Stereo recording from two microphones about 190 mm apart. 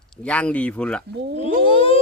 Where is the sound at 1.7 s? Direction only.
30° left (ahead or behind).